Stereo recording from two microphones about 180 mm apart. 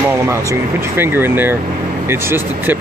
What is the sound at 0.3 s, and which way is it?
Speech, 15° right (ahead or behind).